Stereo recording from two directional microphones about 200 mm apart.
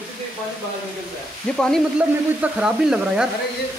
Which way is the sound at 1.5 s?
Centre (ahead or behind).